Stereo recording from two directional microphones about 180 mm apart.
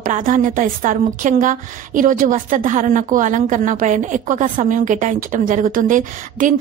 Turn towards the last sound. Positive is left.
turn(degrees=-45)  # may be behind; listen again after turning